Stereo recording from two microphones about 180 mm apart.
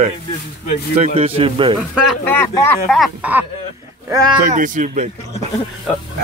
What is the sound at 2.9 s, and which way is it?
Speech, centre (ahead or behind).